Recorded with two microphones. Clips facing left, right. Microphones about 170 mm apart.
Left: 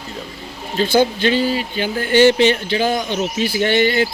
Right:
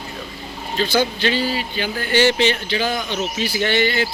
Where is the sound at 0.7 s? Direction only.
50° left (ahead or behind).